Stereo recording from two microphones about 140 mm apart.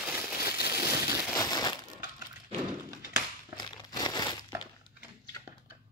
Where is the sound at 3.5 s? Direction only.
30° left (ahead or behind).